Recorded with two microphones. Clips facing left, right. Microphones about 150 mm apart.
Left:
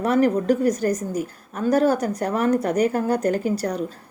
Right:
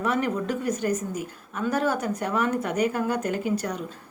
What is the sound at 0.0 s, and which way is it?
A woman's voice, 35° left (ahead or behind).